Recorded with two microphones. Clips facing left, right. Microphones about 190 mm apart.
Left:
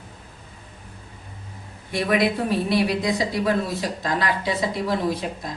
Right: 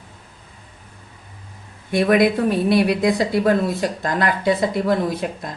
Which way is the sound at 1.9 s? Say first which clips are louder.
Right 6 dB; 50° right (ahead or behind).